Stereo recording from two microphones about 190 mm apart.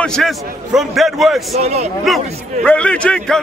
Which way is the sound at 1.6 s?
35° right (ahead or behind).